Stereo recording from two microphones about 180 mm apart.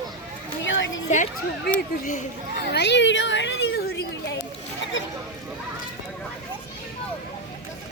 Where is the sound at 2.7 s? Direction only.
75° left (ahead or behind).